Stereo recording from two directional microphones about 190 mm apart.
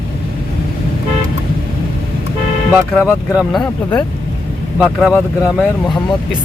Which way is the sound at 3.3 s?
5° right (ahead or behind).